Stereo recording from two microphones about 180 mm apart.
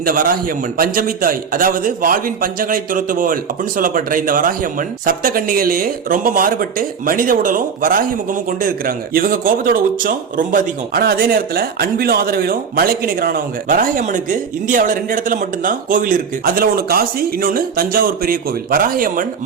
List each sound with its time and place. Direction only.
0.0 s a man's voice: 50° right (ahead or behind)